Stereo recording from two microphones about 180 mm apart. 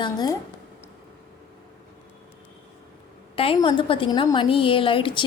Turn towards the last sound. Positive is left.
turn(degrees=30)  # may be behind; listen again after turning